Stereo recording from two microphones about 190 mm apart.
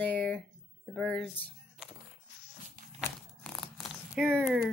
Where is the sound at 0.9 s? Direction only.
Centre (ahead or behind).